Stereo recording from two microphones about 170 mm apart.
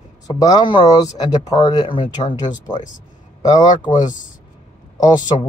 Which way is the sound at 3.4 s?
25° left (ahead or behind).